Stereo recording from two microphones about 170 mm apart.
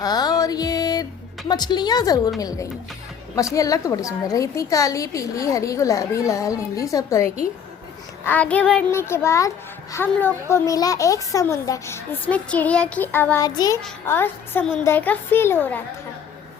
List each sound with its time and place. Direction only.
0.0 s music: 25° left (ahead or behind)
1.5 s a woman's voice: 25° left (ahead or behind)